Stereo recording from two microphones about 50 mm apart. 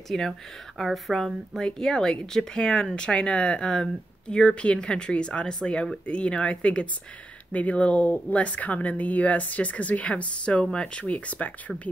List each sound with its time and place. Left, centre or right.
0.1 s speech: centre
1.6 s speech: centre; by 11.7 s left